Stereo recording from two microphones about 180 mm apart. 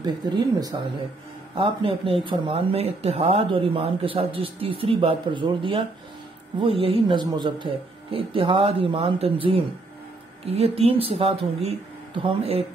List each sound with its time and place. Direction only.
0.2 s speech: 25° right (ahead or behind)